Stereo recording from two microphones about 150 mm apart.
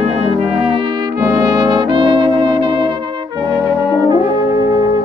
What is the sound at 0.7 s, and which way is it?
Brass instrument, 35° right (ahead or behind).